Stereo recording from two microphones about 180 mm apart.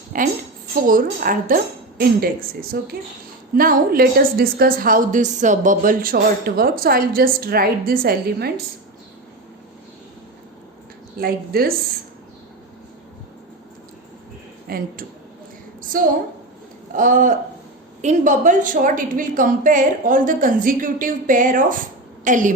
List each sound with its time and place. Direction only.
0.1 s a woman's voice: 50° right (ahead or behind)
11.2 s a woman's voice: 55° right (ahead or behind)
14.7 s speech: 55° right (ahead or behind)
15.8 s a sound: 50° right (ahead or behind)
16.9 s a woman's voice: 45° right (ahead or behind)